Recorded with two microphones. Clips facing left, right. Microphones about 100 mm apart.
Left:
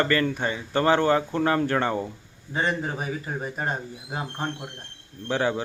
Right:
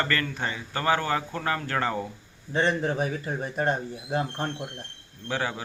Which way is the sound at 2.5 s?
5° left (ahead or behind).